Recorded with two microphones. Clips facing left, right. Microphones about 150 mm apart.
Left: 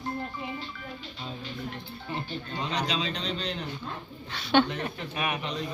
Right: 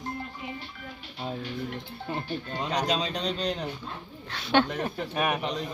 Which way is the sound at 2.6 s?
45° right (ahead or behind).